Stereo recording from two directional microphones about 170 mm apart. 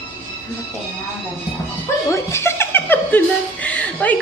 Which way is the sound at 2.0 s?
15° left (ahead or behind).